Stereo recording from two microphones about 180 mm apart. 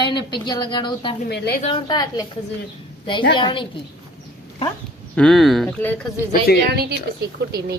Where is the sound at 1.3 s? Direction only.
65° left (ahead or behind).